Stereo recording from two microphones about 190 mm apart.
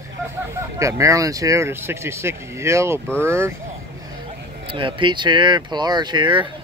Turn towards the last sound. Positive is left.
turn(degrees=-25)  # may be behind; listen again after turning